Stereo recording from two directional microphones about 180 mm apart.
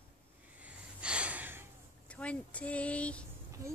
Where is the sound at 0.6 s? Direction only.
5° right (ahead or behind).